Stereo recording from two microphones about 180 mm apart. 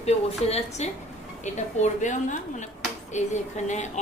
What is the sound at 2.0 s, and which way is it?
A woman's voice, 45° left (ahead or behind).